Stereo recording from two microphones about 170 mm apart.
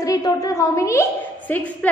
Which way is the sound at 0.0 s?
20° left (ahead or behind).